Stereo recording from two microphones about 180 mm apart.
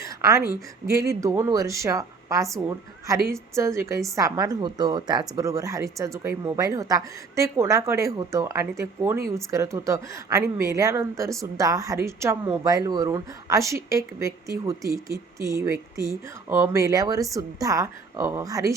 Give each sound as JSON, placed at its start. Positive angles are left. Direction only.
{"t": 0.0, "sound": "a woman's voice", "side_deg": -15}